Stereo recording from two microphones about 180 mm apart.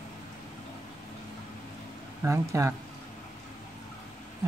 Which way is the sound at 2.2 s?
15° right (ahead or behind).